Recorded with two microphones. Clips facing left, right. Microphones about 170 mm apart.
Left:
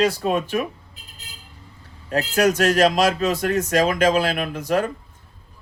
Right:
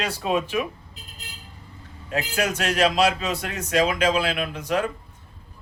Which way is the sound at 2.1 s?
40° left (ahead or behind).